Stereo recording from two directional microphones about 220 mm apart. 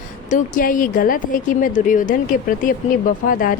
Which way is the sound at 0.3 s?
35° left (ahead or behind).